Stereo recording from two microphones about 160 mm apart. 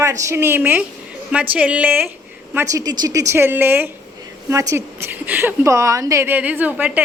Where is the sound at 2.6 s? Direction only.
20° right (ahead or behind).